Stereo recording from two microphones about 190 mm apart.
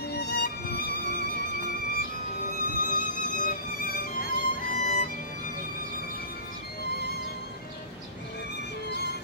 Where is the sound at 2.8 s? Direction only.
45° left (ahead or behind).